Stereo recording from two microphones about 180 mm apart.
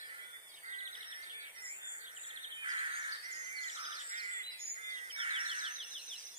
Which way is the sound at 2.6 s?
30° right (ahead or behind).